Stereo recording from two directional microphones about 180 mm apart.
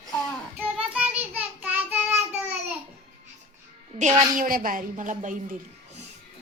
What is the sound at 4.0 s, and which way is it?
A woman's voice, 40° right (ahead or behind).